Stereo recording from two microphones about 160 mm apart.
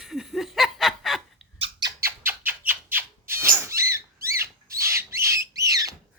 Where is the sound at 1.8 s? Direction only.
25° right (ahead or behind).